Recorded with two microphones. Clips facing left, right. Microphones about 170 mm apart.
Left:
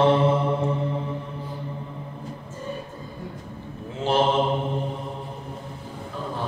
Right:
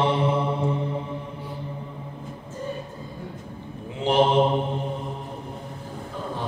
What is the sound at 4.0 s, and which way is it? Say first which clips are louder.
Mantra: right 2 dB; 15° right (ahead or behind).